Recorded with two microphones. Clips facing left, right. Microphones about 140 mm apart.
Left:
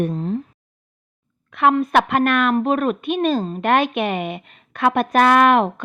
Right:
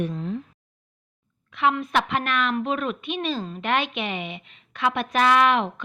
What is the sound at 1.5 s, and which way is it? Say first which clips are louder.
Speech: left 6 dB; 50° left (ahead or behind).